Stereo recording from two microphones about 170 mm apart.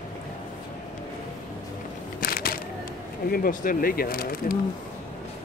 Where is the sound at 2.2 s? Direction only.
60° left (ahead or behind).